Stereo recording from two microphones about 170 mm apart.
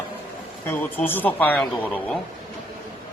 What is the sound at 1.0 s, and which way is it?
Speech, 10° left (ahead or behind).